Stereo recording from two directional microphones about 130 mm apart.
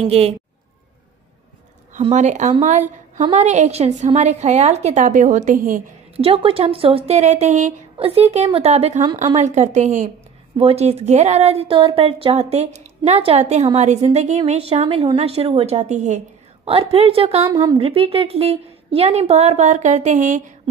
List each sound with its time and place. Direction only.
0.0 s speech: 50° right (ahead or behind)
2.1 s a woman's voice: 65° right (ahead or behind); by 5.8 s 85° right
6.1 s speech: 45° right (ahead or behind); by 7.7 s 65° right (ahead or behind)
8.0 s a woman's voice: 50° right (ahead or behind); by 10.0 s 70° right (ahead or behind)
10.6 s a woman's voice: 50° right (ahead or behind)
16.6 s speech: 50° right (ahead or behind); by 20.5 s 75° right (ahead or behind)